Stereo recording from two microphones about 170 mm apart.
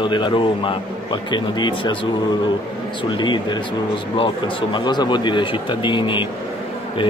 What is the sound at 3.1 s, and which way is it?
Speech, 25° left (ahead or behind).